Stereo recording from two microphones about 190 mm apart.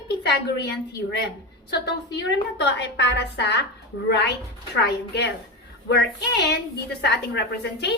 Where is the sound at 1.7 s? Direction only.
60° left (ahead or behind).